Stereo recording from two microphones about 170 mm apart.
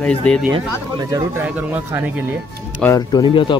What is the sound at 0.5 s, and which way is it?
Speech, 20° right (ahead or behind).